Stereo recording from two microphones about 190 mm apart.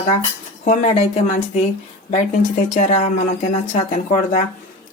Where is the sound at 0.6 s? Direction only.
35° left (ahead or behind).